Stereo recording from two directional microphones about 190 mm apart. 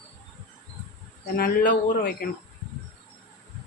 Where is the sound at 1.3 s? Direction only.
50° left (ahead or behind).